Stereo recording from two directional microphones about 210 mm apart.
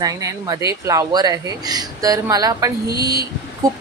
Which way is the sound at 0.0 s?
15° right (ahead or behind).